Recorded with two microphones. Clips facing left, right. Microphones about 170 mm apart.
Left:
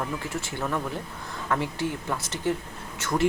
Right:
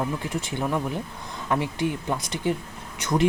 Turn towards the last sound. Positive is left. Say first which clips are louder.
# right 3 dB
turn(degrees=-20)  # may be behind; listen again after turning